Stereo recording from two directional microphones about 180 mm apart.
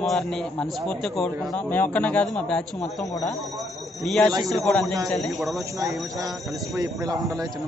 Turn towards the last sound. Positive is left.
turn(degrees=-20)  # may be behind; listen again after turning